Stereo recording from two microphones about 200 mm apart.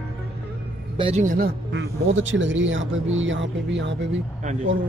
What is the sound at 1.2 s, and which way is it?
Speech, 40° right (ahead or behind).